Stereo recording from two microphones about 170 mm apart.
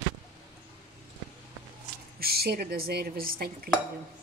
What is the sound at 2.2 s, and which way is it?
A woman's voice, 65° right (ahead or behind).